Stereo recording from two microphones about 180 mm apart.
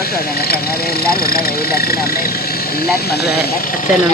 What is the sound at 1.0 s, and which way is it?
Speech, 55° left (ahead or behind).